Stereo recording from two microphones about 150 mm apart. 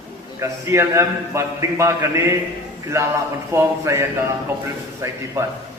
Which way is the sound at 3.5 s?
20° right (ahead or behind).